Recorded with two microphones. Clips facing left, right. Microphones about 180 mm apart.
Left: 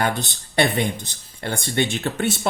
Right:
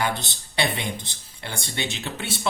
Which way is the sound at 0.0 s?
50° left (ahead or behind).